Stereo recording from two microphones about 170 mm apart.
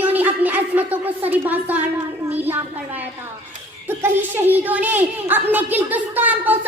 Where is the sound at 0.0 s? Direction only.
10° right (ahead or behind).